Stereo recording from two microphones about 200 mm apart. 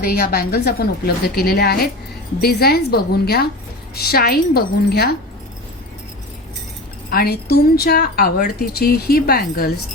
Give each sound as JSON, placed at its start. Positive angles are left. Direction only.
{"t": 0.0, "sound": "a woman's voice", "side_deg": 45}
{"t": 7.1, "sound": "a woman's voice", "side_deg": 50}